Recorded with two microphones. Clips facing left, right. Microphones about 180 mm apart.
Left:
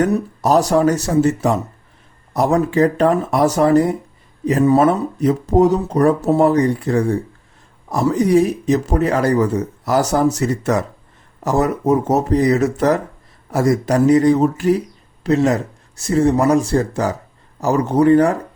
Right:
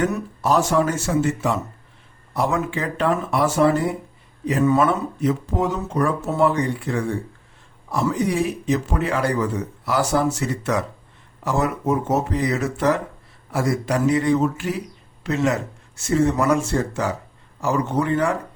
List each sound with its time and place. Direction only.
0.0 s speech: 40° left (ahead or behind)